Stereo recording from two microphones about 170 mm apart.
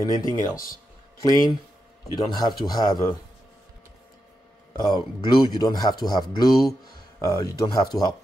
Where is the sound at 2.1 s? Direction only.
25° left (ahead or behind).